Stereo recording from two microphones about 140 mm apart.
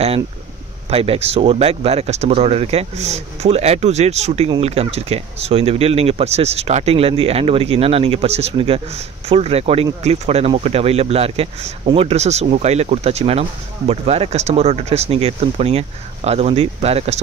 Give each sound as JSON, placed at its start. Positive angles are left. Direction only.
{"t": 0.8, "sound": "speech", "side_deg": -45}